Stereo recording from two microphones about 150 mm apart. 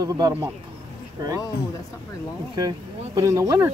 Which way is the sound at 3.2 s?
20° right (ahead or behind).